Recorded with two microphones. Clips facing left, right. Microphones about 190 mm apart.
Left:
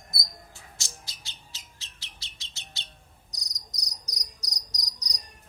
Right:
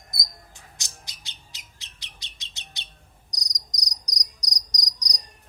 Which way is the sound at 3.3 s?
15° right (ahead or behind).